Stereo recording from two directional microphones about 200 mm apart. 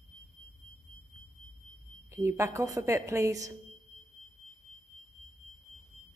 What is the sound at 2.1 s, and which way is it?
A woman's voice, 15° right (ahead or behind).